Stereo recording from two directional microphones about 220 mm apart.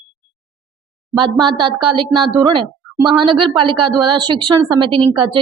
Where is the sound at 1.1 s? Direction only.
20° right (ahead or behind).